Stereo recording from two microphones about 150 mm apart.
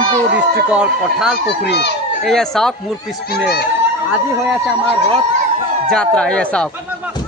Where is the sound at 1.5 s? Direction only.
90° left.